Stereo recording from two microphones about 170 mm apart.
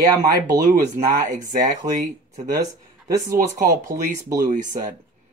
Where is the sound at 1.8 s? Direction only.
20° right (ahead or behind).